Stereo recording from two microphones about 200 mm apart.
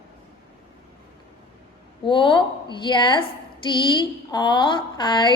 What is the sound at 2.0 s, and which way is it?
A woman's voice, 25° left (ahead or behind).